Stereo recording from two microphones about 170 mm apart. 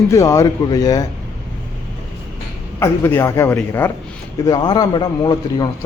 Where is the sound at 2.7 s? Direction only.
15° left (ahead or behind).